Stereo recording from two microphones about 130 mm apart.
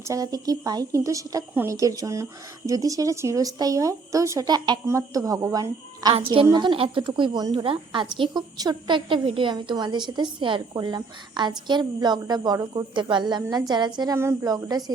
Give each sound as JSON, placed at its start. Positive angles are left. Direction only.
{"t": 0.1, "sound": "speech", "side_deg": -30}
{"t": 6.1, "sound": "a woman's voice", "side_deg": -45}